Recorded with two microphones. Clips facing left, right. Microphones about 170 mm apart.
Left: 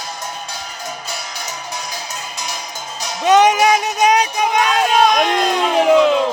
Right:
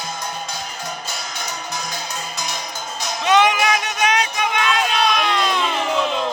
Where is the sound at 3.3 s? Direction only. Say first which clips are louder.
Left 5 dB; 45° left (ahead or behind).